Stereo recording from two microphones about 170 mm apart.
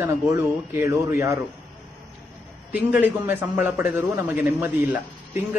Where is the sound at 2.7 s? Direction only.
10° right (ahead or behind).